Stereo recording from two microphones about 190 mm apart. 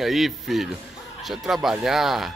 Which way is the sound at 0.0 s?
Centre (ahead or behind).